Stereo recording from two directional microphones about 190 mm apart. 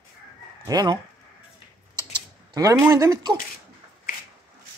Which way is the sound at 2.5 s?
15° right (ahead or behind).